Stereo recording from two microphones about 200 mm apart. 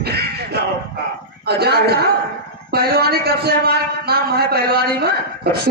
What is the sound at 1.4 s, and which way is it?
A man's voice, 55° right (ahead or behind).